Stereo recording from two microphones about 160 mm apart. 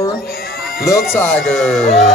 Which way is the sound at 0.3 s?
70° left (ahead or behind).